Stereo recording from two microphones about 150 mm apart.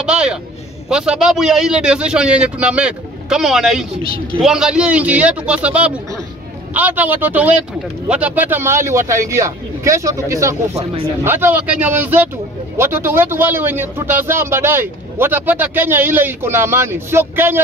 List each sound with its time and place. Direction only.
0.0 s a man's voice: 5° right (ahead or behind)